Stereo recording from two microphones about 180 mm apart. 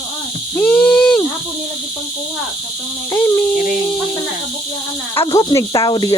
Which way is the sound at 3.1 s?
15° left (ahead or behind).